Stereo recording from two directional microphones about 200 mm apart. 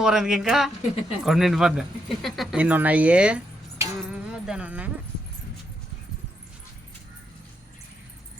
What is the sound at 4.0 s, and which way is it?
Music, 5° right (ahead or behind).